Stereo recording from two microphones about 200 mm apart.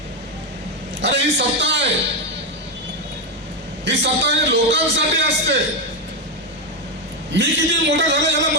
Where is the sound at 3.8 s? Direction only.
60° right (ahead or behind).